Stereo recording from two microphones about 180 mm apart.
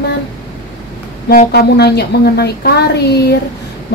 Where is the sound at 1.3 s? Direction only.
60° left (ahead or behind).